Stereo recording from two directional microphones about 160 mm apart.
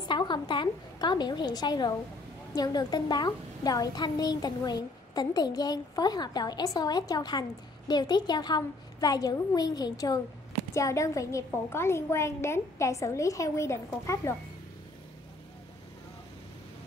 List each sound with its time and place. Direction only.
0.1 s a woman's voice: 30° left (ahead or behind)